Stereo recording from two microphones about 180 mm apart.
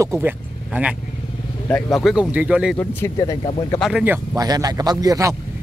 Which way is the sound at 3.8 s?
5° right (ahead or behind).